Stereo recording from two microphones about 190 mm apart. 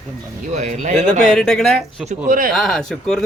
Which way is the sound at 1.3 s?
5° left (ahead or behind).